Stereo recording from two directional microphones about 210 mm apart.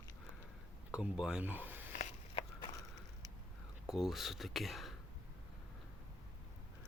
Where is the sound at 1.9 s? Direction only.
35° left (ahead or behind).